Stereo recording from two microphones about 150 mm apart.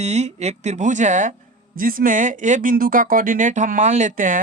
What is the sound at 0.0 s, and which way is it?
Speech, 45° right (ahead or behind).